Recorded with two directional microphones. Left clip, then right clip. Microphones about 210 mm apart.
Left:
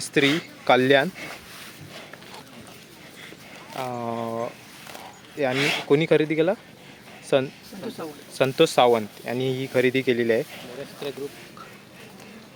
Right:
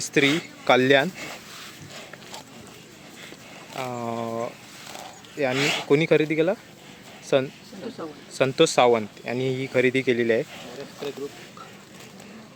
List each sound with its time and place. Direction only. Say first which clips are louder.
0.0 s a sound: even; centre (ahead or behind)
3.7 s speech: left 1 dB; centre (ahead or behind)
8.0 s a man's voice: even; 55° left (ahead or behind)
8.4 s speech: even; centre (ahead or behind)